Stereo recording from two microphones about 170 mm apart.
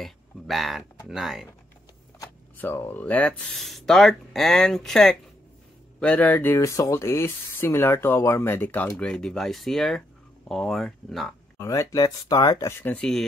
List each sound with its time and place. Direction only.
0.0 s speech: centre (ahead or behind)
2.1 s speech: 10° left (ahead or behind)
11.5 s speech: 15° left (ahead or behind)